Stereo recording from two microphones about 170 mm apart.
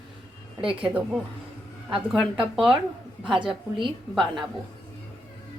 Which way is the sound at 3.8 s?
30° right (ahead or behind).